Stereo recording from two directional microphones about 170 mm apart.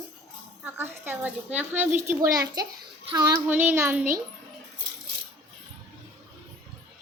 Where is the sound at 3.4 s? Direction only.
10° right (ahead or behind).